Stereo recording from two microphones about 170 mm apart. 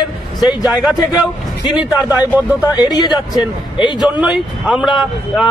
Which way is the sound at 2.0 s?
10° right (ahead or behind).